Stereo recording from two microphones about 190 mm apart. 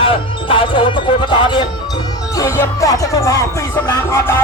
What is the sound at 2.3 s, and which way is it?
Music, 15° left (ahead or behind).